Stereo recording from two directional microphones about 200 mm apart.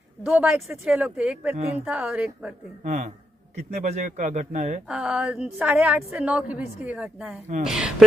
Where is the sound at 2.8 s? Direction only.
40° right (ahead or behind).